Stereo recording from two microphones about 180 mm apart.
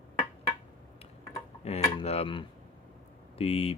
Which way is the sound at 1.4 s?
35° left (ahead or behind).